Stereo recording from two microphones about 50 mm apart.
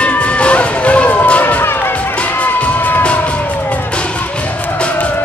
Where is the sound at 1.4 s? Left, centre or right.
Left.